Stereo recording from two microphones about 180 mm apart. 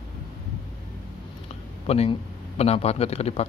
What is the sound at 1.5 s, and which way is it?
A man's voice, 35° left (ahead or behind).